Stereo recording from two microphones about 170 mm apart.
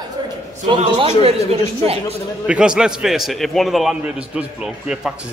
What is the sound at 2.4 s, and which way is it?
A man's voice, 5° right (ahead or behind).